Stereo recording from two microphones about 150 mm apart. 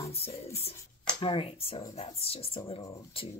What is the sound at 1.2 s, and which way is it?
Speech, 40° left (ahead or behind).